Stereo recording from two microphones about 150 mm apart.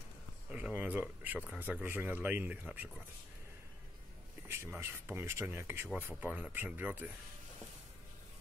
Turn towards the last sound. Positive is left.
turn(degrees=-10)  # may be behind; listen again after turning